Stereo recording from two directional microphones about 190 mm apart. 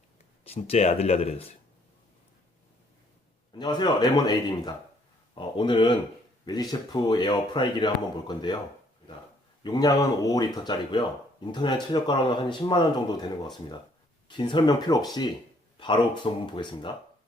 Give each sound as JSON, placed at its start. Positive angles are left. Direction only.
{"t": 0.4, "sound": "speech", "side_deg": 30}
{"t": 3.5, "sound": "speech", "side_deg": 25}
{"t": 9.6, "sound": "speech", "side_deg": 20}
{"t": 14.3, "sound": "speech", "side_deg": 25}